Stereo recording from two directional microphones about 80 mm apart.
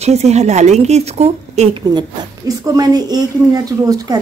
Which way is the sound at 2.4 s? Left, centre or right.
Right.